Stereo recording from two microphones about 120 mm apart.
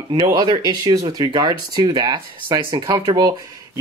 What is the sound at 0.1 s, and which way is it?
Speech, 35° right (ahead or behind).